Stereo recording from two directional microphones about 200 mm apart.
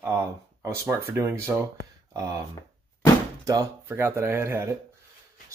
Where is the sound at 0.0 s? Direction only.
10° right (ahead or behind).